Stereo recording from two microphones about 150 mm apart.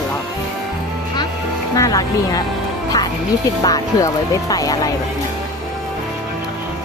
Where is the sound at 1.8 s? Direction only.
25° left (ahead or behind).